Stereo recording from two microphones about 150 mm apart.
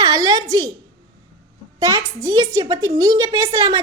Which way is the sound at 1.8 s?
20° right (ahead or behind).